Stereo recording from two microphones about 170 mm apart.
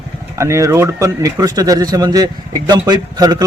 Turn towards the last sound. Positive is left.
turn(degrees=-25)  # may be behind; listen again after turning